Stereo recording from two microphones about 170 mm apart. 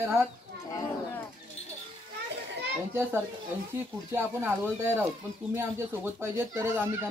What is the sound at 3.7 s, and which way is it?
A child's voice, 15° right (ahead or behind).